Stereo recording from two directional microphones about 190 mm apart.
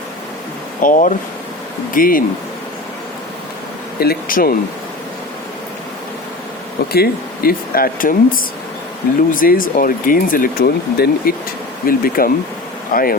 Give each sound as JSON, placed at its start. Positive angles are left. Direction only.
{"t": 0.8, "sound": "speech", "side_deg": 45}
{"t": 4.0, "sound": "speech", "side_deg": 50}
{"t": 6.9, "sound": "speech", "side_deg": 55}